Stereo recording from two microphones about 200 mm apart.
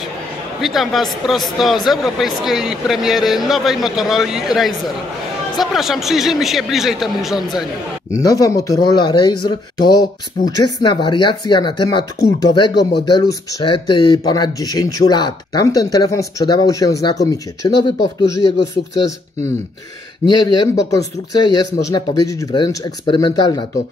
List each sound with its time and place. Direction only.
0.6 s a man's voice: centre (ahead or behind)
8.1 s speech: 15° left (ahead or behind)
20.2 s speech: 20° left (ahead or behind)